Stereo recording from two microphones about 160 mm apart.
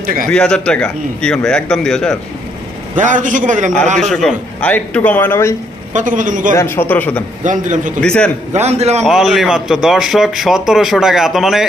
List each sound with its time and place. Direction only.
0.0 s speech: 60° right (ahead or behind)
0.3 s a man's voice: 5° left (ahead or behind)
2.9 s a man's voice: 50° right (ahead or behind)
4.1 s a man's voice: centre (ahead or behind)
5.9 s a man's voice: 50° right (ahead or behind)
6.6 s a man's voice: 15° left (ahead or behind)
7.4 s a man's voice: 50° right (ahead or behind)
8.0 s a man's voice: 5° left (ahead or behind)
8.5 s a man's voice: 45° right (ahead or behind)
9.0 s a man's voice: centre (ahead or behind)